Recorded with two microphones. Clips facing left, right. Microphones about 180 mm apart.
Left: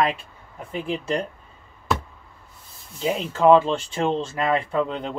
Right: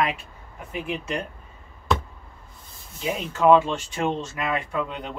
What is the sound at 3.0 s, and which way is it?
Speech, 30° left (ahead or behind).